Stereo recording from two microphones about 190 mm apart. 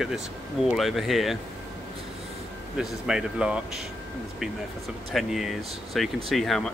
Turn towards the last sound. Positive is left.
turn(degrees=0)  # may be behind; listen again after turning